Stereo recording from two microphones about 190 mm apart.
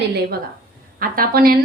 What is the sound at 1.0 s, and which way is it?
Speech, 50° right (ahead or behind).